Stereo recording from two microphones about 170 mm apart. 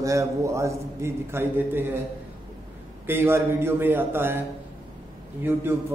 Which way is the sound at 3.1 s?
15° right (ahead or behind).